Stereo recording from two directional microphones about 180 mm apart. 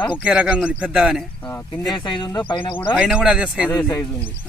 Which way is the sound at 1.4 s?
10° left (ahead or behind).